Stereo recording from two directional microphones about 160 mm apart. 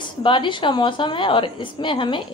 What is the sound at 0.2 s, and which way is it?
A woman's voice, 30° left (ahead or behind).